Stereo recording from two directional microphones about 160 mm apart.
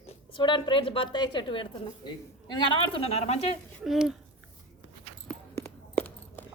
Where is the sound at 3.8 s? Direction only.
5° right (ahead or behind).